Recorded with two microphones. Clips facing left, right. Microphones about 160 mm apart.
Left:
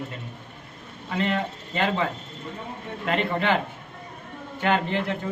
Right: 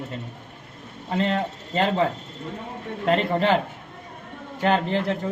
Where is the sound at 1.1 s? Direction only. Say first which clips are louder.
Right 2 dB; 35° right (ahead or behind).